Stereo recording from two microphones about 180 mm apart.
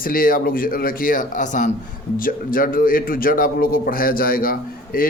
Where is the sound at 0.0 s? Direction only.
50° left (ahead or behind).